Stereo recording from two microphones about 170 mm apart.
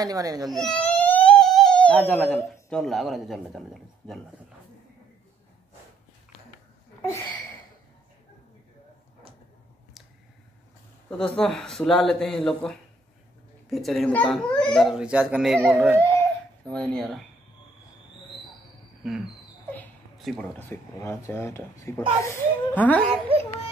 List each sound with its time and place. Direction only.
0.0 s speech: 20° right (ahead or behind)
0.5 s baby cry: centre (ahead or behind)
2.7 s speech: centre (ahead or behind)
7.0 s a sound: 15° left (ahead or behind)
11.1 s speech: 5° left (ahead or behind)
15.0 s speech: 5° right (ahead or behind)
16.6 s speech: 5° left (ahead or behind)
19.0 s speech: centre (ahead or behind)
19.7 s a sound: 5° left (ahead or behind)
20.5 s speech: 15° left (ahead or behind)